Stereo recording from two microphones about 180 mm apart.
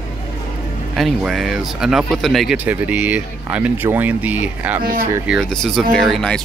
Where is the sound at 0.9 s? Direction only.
Centre (ahead or behind).